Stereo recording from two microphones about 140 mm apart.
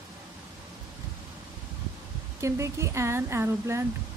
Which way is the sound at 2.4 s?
20° right (ahead or behind).